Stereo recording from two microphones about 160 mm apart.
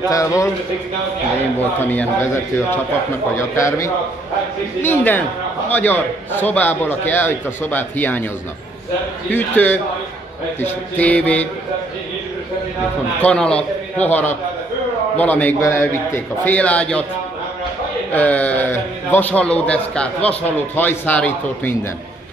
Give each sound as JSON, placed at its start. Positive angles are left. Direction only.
{"t": 0.1, "sound": "a man's voice", "side_deg": 20}
{"t": 1.9, "sound": "a man's voice", "side_deg": 10}
{"t": 3.3, "sound": "a man's voice", "side_deg": 20}
{"t": 9.3, "sound": "a man's voice", "side_deg": 10}
{"t": 13.2, "sound": "a man's voice", "side_deg": 5}
{"t": 18.1, "sound": "a man's voice", "side_deg": 10}